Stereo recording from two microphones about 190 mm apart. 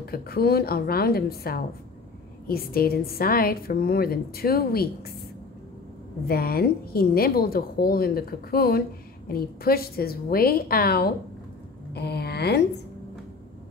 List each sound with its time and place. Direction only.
0.0 s a woman's voice: 55° left (ahead or behind)
6.2 s a woman's voice: 50° left (ahead or behind)